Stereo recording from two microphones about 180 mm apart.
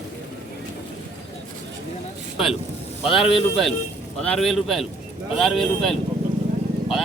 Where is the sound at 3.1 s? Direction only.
30° left (ahead or behind).